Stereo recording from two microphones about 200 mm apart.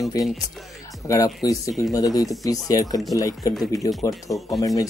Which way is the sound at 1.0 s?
15° left (ahead or behind).